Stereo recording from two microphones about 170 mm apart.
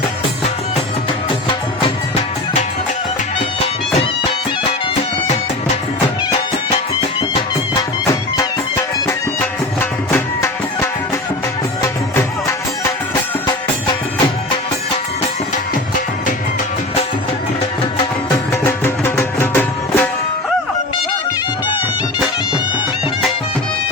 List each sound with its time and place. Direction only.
8.4 s music: 20° left (ahead or behind)
18.3 s music: 15° left (ahead or behind)